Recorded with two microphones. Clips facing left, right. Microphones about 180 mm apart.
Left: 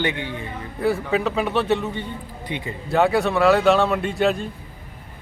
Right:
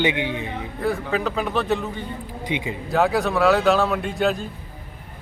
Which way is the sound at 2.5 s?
20° right (ahead or behind).